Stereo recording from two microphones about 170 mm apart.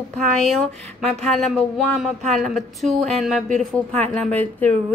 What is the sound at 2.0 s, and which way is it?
A woman's voice, centre (ahead or behind).